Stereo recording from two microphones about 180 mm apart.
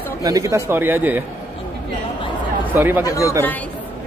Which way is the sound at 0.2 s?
20° right (ahead or behind).